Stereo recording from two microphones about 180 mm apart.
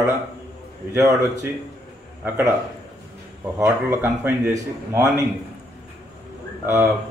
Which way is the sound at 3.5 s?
15° right (ahead or behind).